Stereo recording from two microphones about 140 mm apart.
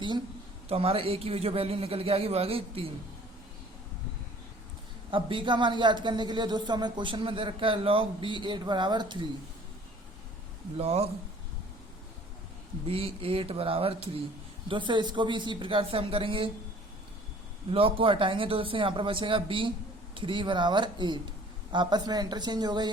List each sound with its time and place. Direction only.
0.7 s a man's voice: 40° right (ahead or behind)
5.1 s speech: 35° right (ahead or behind)
10.8 s a man's voice: 45° right (ahead or behind)
12.9 s a man's voice: 40° right (ahead or behind)
17.7 s speech: 40° right (ahead or behind)